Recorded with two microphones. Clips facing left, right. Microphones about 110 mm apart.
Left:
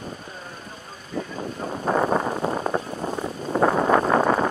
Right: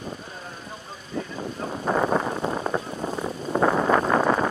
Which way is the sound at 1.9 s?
25° left (ahead or behind).